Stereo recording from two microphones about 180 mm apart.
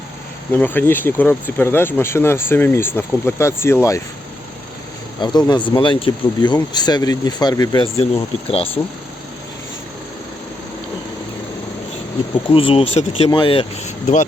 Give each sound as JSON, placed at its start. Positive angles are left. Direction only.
{"t": 0.5, "sound": "speech", "side_deg": 10}
{"t": 5.2, "sound": "speech", "side_deg": 25}
{"t": 8.4, "sound": "speech", "side_deg": 30}
{"t": 12.5, "sound": "speech", "side_deg": 30}